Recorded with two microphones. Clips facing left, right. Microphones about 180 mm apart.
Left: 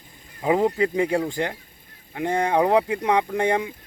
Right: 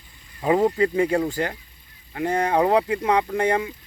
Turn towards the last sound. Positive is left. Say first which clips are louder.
# even
turn(degrees=15)  # may be behind; listen again after turning